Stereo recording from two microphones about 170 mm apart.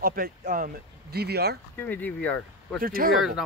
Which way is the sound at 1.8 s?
10° left (ahead or behind).